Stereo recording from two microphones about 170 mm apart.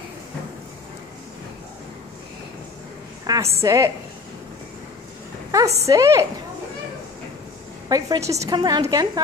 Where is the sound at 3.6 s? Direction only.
15° right (ahead or behind).